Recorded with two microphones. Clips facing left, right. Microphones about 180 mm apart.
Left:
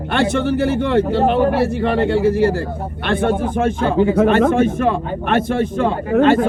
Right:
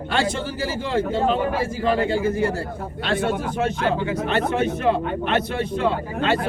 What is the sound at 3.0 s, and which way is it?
A man's voice, 55° left (ahead or behind).